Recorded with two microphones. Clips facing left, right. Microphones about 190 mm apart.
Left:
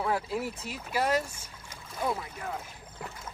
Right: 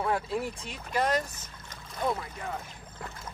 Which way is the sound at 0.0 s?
5° left (ahead or behind).